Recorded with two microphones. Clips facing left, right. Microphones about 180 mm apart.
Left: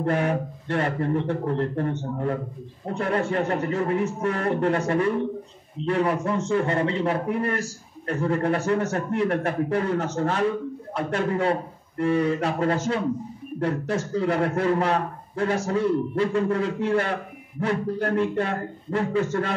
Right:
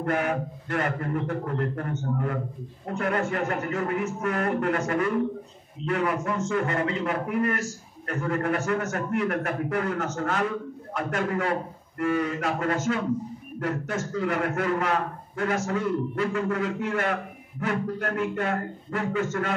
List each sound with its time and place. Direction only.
0.0 s a man's voice: 30° left (ahead or behind)